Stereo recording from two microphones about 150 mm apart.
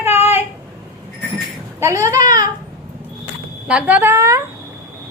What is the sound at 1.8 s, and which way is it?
Speech, 20° right (ahead or behind).